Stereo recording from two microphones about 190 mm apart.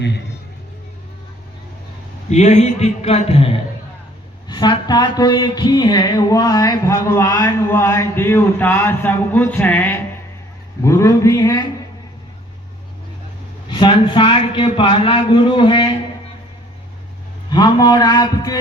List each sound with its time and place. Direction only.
2.3 s a man's voice: 35° left (ahead or behind)
4.4 s a sound: 25° left (ahead or behind)
13.7 s a man's voice: 25° left (ahead or behind)
17.5 s a man's voice: 20° left (ahead or behind)